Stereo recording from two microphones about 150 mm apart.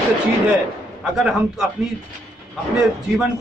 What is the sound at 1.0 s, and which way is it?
Speech, centre (ahead or behind).